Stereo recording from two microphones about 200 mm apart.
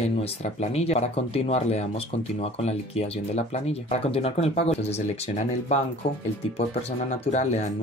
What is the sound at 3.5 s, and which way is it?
Speech, 30° left (ahead or behind).